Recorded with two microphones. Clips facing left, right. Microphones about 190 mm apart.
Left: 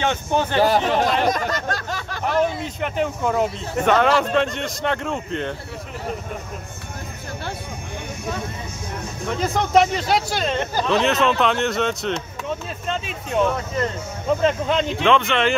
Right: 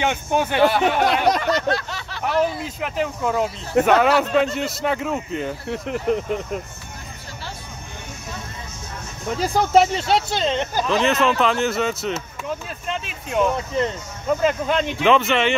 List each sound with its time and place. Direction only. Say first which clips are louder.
0.0 s speech: even; 15° right (ahead or behind)
0.6 s speech: even; 35° left (ahead or behind)
1.0 s speech: right 2 dB; 70° right (ahead or behind)
1.4 s a sound: right 4 dB; 45° left (ahead or behind)
2.4 s speech: left 1 dB; centre (ahead or behind)
9.4 s speech: right 1 dB; 35° right (ahead or behind); by 10.9 s 15° right (ahead or behind)
10.9 s speech: even; centre (ahead or behind)
14.4 s speech: even; centre (ahead or behind)